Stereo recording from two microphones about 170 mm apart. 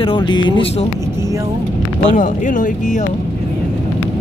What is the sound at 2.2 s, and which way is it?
Speech, 50° left (ahead or behind).